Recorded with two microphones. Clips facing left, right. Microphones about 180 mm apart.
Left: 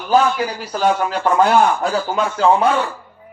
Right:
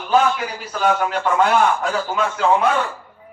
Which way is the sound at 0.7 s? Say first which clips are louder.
Even; 35° left (ahead or behind).